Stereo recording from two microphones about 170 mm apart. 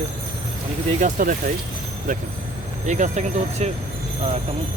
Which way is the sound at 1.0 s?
50° right (ahead or behind).